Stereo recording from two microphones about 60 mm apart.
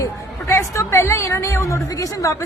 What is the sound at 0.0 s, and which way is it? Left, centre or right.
A woman's voice, left.